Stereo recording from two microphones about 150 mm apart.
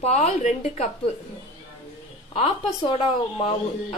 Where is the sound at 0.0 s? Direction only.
45° left (ahead or behind).